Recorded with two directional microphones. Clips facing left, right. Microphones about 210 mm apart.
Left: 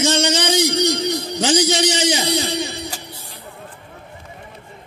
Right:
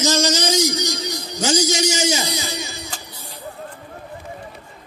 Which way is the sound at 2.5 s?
60° left (ahead or behind).